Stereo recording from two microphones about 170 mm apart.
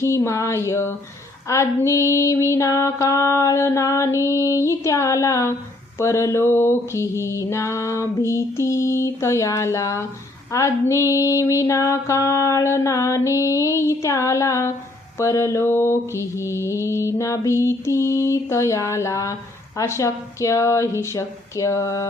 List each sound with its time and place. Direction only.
0.0 s mantra: 15° left (ahead or behind)